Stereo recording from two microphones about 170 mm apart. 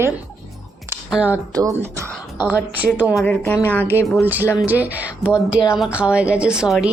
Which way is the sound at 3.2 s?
15° left (ahead or behind).